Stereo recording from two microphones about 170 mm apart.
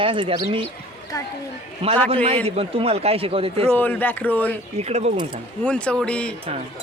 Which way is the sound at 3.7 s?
10° left (ahead or behind).